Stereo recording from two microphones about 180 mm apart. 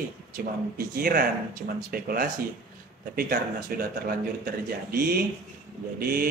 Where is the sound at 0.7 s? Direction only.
55° right (ahead or behind).